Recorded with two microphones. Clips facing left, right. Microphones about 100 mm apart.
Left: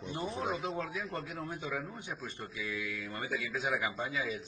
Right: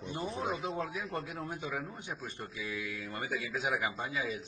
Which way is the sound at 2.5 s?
35° right (ahead or behind).